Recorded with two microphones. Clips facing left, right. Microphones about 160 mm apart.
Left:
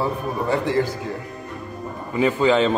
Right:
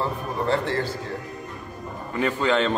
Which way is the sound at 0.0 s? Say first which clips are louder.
Left 3 dB; 10° left (ahead or behind).